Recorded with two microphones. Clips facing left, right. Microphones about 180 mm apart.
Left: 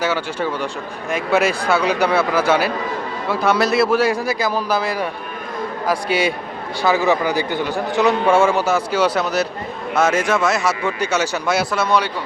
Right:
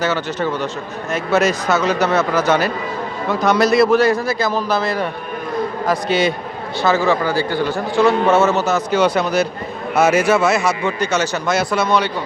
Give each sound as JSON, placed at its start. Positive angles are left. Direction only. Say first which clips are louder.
{"t": 0.0, "sound": "a man's voice", "louder": "right 1 dB", "side_deg": 10}